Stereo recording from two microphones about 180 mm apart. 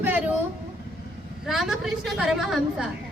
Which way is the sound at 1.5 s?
Centre (ahead or behind).